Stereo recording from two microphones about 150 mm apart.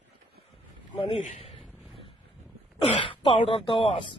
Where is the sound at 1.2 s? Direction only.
45° left (ahead or behind).